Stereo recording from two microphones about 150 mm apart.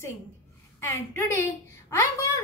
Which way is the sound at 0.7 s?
15° left (ahead or behind).